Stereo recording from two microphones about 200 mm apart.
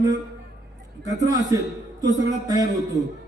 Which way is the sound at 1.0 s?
15° right (ahead or behind).